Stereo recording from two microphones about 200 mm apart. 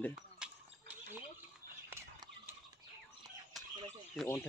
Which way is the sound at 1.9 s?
10° right (ahead or behind).